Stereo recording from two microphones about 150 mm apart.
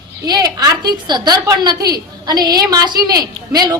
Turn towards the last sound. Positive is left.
turn(degrees=-25)  # may be behind; listen again after turning